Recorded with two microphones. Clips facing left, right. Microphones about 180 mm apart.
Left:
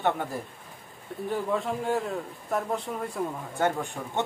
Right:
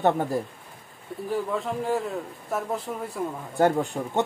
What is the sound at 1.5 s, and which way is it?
Speech, centre (ahead or behind).